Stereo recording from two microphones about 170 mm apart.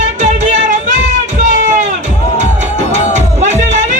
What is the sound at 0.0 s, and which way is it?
Music, 45° right (ahead or behind).